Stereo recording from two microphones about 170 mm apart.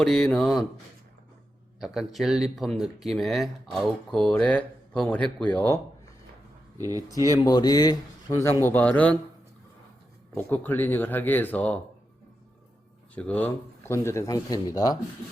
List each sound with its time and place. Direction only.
0.0 s speech: 5° left (ahead or behind)
1.8 s speech: centre (ahead or behind)
6.7 s speech: 20° right (ahead or behind)
7.3 s speech: 25° left (ahead or behind)
10.3 s speech: 10° left (ahead or behind)
13.1 s speech: 10° left (ahead or behind)